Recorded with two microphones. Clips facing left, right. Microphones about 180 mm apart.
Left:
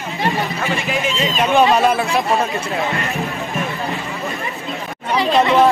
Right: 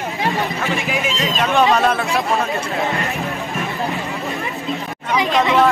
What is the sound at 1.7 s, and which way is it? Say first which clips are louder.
Speech: left 2 dB; 15° left (ahead or behind).